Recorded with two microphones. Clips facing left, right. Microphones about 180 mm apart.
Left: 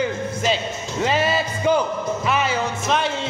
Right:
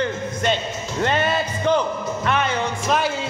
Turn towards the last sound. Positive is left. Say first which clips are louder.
# right 1 dB
turn(degrees=0)  # may be behind; listen again after turning